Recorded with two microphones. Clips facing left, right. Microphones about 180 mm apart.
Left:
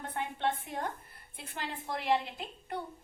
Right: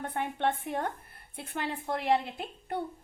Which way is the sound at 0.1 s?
55° right (ahead or behind).